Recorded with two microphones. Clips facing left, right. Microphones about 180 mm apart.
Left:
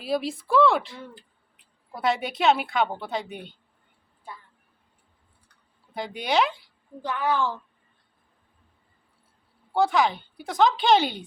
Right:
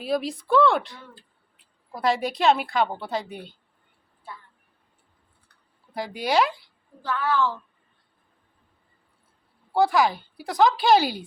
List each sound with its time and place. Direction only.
0.0 s a woman's voice: centre (ahead or behind)
5.9 s a woman's voice: centre (ahead or behind)
7.0 s a woman's voice: 15° left (ahead or behind)
9.7 s a woman's voice: centre (ahead or behind)